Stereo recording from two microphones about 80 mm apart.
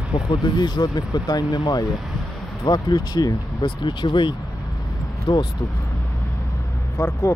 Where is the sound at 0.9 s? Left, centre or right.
Left.